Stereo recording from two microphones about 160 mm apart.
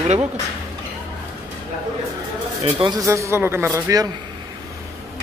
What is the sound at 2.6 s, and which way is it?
Speech, 30° right (ahead or behind).